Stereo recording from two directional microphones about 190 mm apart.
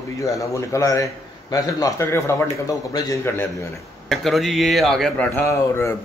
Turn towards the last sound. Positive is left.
turn(degrees=15)  # may be behind; listen again after turning